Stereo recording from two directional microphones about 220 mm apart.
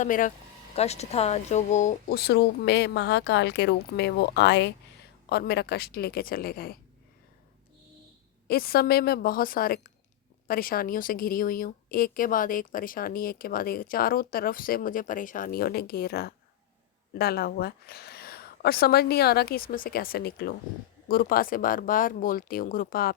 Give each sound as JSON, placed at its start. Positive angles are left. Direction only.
{"t": 0.0, "sound": "a woman's voice", "side_deg": 35}
{"t": 8.4, "sound": "a woman's voice", "side_deg": 45}